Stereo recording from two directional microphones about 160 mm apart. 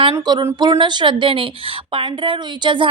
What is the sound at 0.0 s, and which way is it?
Speech, 30° right (ahead or behind).